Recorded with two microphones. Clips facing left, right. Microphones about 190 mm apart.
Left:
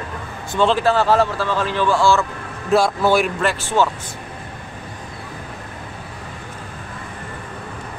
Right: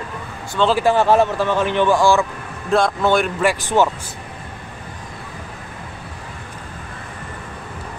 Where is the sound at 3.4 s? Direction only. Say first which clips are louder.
Right 2 dB; 15° right (ahead or behind).